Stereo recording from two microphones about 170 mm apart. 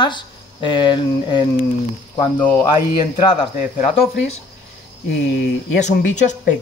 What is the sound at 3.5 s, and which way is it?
Speech, 45° left (ahead or behind).